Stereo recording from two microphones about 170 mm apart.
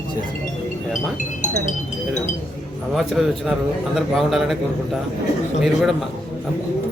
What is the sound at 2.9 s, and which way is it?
A man's voice, centre (ahead or behind).